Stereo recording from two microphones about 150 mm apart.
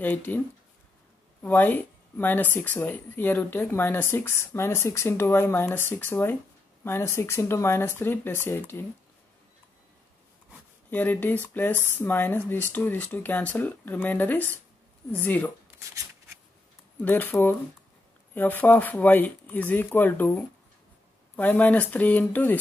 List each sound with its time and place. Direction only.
0.0 s speech: 10° left (ahead or behind)
1.4 s speech: 10° left (ahead or behind)
10.9 s speech: 10° left (ahead or behind)
17.0 s speech: 15° left (ahead or behind)